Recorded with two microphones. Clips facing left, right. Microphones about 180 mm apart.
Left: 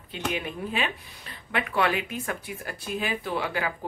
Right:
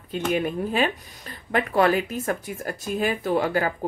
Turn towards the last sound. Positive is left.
turn(degrees=-45)  # may be behind; listen again after turning